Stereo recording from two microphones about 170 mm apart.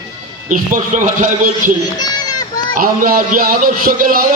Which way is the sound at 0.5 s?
50° right (ahead or behind).